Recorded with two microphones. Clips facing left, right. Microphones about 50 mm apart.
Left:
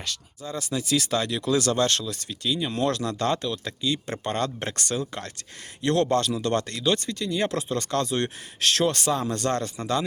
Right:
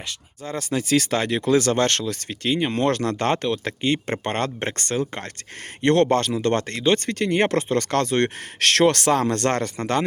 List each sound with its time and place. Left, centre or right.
0.4 s speech: right